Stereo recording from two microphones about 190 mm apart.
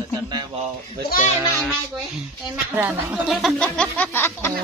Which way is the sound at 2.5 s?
10° right (ahead or behind).